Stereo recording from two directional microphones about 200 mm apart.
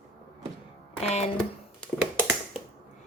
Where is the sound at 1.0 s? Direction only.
35° left (ahead or behind).